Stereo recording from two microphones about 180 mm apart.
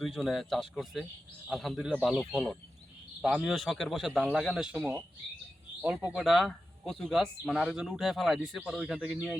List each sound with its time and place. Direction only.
0.0 s speech: centre (ahead or behind)
6.1 s speech: centre (ahead or behind)